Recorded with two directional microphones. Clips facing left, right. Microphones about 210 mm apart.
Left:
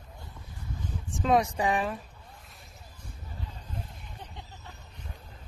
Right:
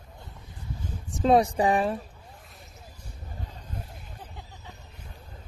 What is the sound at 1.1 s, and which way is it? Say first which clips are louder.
Speech: right 4 dB; 35° right (ahead or behind).